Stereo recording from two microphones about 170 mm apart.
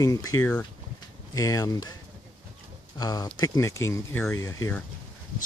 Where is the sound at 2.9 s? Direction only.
20° left (ahead or behind).